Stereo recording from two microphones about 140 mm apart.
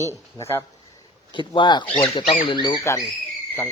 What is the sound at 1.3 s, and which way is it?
Speech, 35° left (ahead or behind).